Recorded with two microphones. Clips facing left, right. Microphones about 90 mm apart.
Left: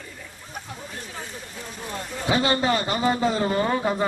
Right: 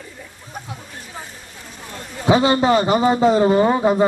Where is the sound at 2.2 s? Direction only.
20° right (ahead or behind).